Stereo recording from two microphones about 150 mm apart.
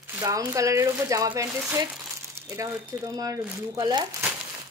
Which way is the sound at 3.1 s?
25° right (ahead or behind).